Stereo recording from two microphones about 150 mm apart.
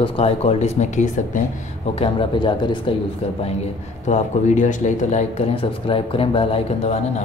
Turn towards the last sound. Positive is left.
turn(degrees=45)  # may be behind; listen again after turning